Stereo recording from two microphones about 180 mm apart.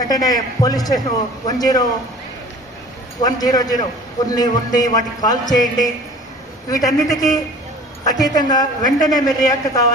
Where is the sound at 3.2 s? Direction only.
20° left (ahead or behind).